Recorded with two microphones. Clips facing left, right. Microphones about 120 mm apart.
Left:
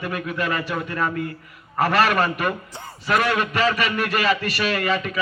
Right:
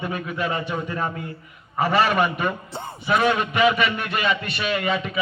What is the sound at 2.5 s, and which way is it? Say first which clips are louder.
Speech: even; 25° right (ahead or behind).